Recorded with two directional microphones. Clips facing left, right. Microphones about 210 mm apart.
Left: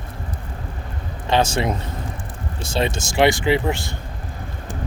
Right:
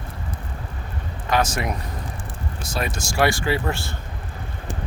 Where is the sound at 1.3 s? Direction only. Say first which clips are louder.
Left 3 dB; 30° left (ahead or behind).